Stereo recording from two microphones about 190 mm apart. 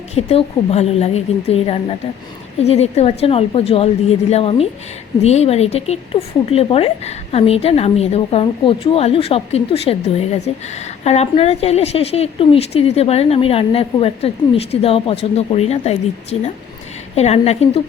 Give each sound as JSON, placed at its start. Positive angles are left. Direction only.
{"t": 0.1, "sound": "a woman's voice", "side_deg": 35}
{"t": 17.2, "sound": "a woman's voice", "side_deg": 35}